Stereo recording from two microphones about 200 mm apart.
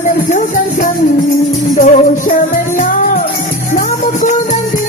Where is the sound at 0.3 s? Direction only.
40° left (ahead or behind).